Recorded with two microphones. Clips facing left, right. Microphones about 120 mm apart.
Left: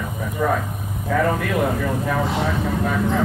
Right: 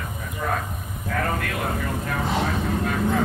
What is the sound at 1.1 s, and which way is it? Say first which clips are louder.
Speech: left 7 dB; 85° left.